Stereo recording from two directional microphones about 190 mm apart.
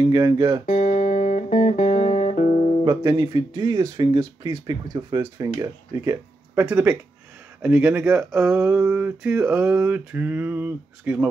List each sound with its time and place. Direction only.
0.0 s speech: 20° right (ahead or behind)
0.7 s music: 40° left (ahead or behind)
2.8 s speech: 20° right (ahead or behind)